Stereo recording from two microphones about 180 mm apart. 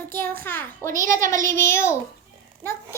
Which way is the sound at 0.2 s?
10° left (ahead or behind).